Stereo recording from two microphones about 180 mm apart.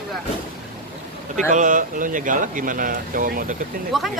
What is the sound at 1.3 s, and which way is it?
Speech, 45° right (ahead or behind).